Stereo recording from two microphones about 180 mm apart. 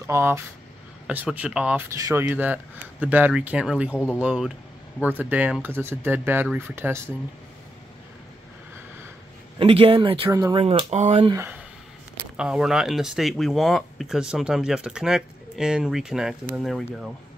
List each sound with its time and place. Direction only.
0.0 s speech: 15° right (ahead or behind)
9.6 s speech: 30° right (ahead or behind)
10.3 s speech: 20° right (ahead or behind)
10.6 s speech: 35° right (ahead or behind)
12.4 s speech: 5° right (ahead or behind)